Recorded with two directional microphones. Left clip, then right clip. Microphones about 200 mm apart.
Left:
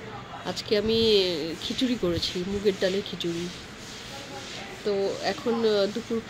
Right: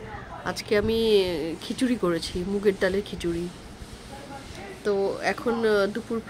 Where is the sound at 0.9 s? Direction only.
30° right (ahead or behind).